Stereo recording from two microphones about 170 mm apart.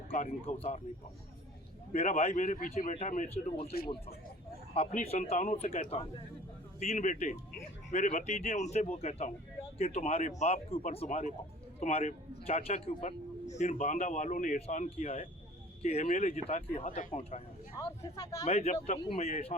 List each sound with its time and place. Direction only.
0.2 s a man's voice: 40° left (ahead or behind)
1.9 s speech: 40° left (ahead or behind)
3.3 s a man's voice: 35° left (ahead or behind)
4.9 s a man's voice: 45° left (ahead or behind)
6.7 s a man's voice: 45° left (ahead or behind)
16.8 s speech: 50° left (ahead or behind)
17.7 s speech: 20° left (ahead or behind)
18.4 s a man's voice: 40° left (ahead or behind)